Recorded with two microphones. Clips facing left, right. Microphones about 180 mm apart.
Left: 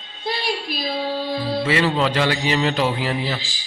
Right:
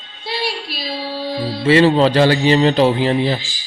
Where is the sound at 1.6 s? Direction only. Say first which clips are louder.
Right 10 dB; 30° right (ahead or behind).